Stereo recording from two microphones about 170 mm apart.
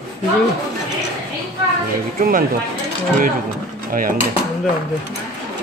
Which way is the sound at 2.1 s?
55° right (ahead or behind).